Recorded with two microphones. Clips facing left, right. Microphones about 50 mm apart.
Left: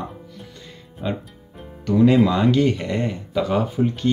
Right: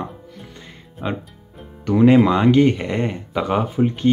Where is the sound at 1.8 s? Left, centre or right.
Right.